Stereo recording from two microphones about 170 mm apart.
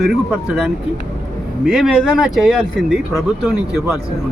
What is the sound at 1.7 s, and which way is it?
Speech, 5° right (ahead or behind).